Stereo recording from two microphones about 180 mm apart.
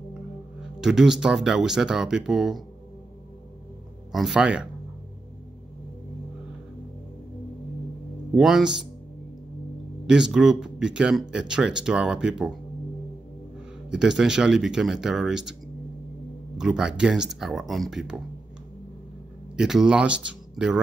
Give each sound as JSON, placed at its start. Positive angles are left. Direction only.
{"t": 0.7, "sound": "speech", "side_deg": -5}
{"t": 4.1, "sound": "speech", "side_deg": 0}
{"t": 8.4, "sound": "speech", "side_deg": 0}
{"t": 10.0, "sound": "speech", "side_deg": -5}
{"t": 13.8, "sound": "speech", "side_deg": -5}
{"t": 16.5, "sound": "speech", "side_deg": -5}
{"t": 19.5, "sound": "speech", "side_deg": -5}